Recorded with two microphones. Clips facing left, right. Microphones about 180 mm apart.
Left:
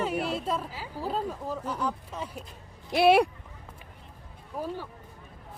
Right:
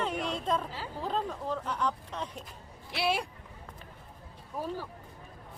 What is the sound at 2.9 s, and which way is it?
Speech, 60° left (ahead or behind).